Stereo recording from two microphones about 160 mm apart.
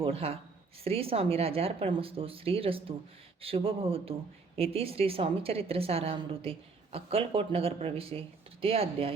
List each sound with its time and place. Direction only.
0.0 s a woman's voice: 35° right (ahead or behind)